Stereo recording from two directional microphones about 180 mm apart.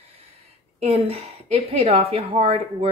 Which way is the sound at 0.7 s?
35° right (ahead or behind).